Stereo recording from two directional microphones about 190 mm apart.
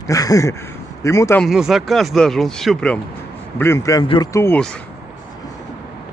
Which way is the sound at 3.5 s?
15° left (ahead or behind).